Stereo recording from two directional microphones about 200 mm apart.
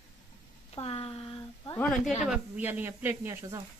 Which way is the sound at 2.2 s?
10° right (ahead or behind).